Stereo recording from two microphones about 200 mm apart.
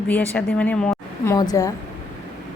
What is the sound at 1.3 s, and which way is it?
Speech, 15° left (ahead or behind).